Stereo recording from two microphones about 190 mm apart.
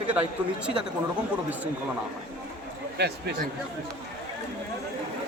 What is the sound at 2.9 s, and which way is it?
Speech, 60° right (ahead or behind).